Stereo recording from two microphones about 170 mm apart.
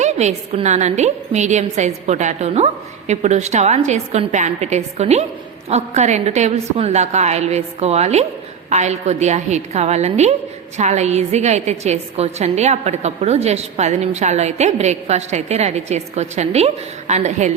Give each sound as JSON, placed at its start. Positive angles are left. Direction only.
{"t": 0.0, "sound": "a woman's voice", "side_deg": -40}